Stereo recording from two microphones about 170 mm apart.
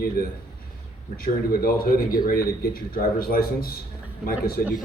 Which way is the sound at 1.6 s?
60° left (ahead or behind).